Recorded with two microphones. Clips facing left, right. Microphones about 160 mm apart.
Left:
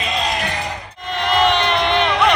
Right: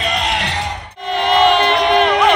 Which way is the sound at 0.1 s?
75° right (ahead or behind).